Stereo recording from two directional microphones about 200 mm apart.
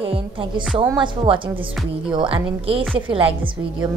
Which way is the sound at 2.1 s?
25° right (ahead or behind).